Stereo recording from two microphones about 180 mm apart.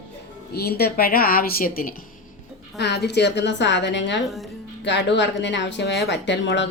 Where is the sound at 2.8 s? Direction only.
70° left (ahead or behind).